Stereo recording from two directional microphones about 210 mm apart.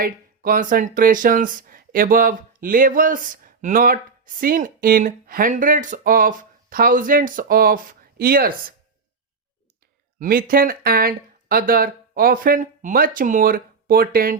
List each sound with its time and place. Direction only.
0.0 s speech: 40° right (ahead or behind)
10.2 s speech: 40° right (ahead or behind)